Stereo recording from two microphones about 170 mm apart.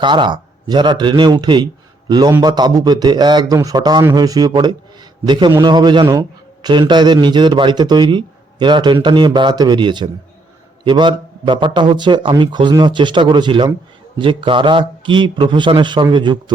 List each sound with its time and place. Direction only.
0.0 s a man's voice: 25° right (ahead or behind)